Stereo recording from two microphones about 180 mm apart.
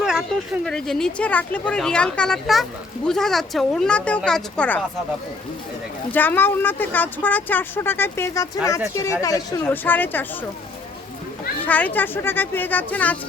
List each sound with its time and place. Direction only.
0.0 s speech: centre (ahead or behind)
6.1 s speech: 10° left (ahead or behind)
11.6 s speech: 10° left (ahead or behind)